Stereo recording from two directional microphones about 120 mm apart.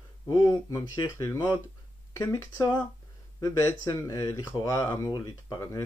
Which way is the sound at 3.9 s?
25° left (ahead or behind).